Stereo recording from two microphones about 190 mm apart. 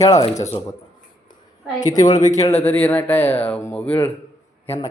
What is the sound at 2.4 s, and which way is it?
Speech, 10° left (ahead or behind).